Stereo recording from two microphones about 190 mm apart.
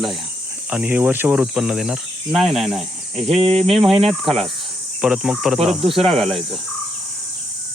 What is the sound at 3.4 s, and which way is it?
Speech, 30° right (ahead or behind).